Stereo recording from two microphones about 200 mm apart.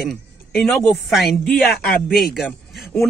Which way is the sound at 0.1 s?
5° left (ahead or behind).